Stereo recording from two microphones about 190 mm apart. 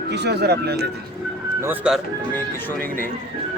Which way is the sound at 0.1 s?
60° right (ahead or behind).